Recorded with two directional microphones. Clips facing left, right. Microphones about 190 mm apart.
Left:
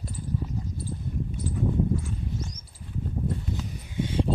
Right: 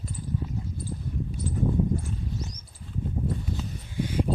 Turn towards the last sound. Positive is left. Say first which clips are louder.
# even
turn(degrees=25)  # may be behind; listen again after turning